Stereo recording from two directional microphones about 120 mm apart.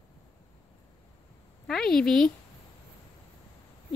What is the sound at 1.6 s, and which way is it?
Speech, 5° left (ahead or behind).